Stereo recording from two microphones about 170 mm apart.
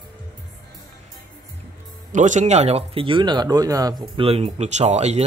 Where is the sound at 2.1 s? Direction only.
45° right (ahead or behind); by 3.9 s 20° right (ahead or behind).